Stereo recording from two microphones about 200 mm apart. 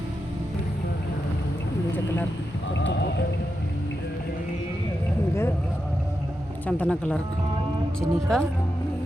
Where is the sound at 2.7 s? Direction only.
65° left (ahead or behind).